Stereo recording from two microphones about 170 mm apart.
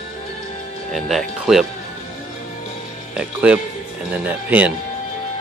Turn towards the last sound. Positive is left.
turn(degrees=-10)  # may be behind; listen again after turning